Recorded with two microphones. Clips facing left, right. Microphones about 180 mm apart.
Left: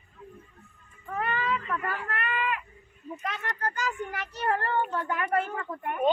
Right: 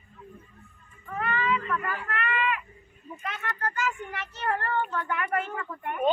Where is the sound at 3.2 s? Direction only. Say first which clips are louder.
Even; 40° left (ahead or behind).